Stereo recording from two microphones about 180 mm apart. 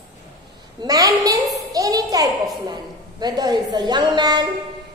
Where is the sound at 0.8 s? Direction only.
20° right (ahead or behind).